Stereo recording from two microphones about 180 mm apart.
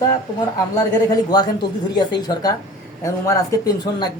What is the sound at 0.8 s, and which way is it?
Speech, 20° left (ahead or behind).